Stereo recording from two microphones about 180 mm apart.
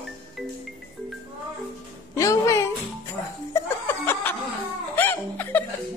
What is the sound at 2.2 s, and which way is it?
Music, 15° left (ahead or behind).